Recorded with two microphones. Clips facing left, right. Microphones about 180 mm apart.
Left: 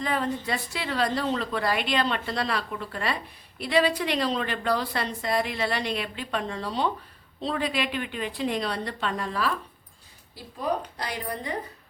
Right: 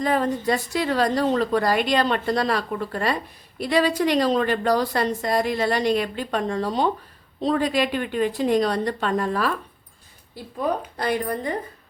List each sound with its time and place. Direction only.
0.0 s a woman's voice: 45° right (ahead or behind)
10.9 s a woman's voice: 55° right (ahead or behind)